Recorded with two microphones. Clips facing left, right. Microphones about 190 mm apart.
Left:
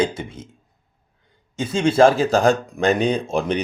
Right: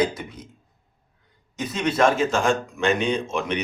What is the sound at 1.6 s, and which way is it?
Speech, 30° left (ahead or behind).